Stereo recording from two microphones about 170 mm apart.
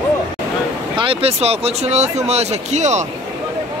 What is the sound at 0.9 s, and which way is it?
Speech, 35° right (ahead or behind).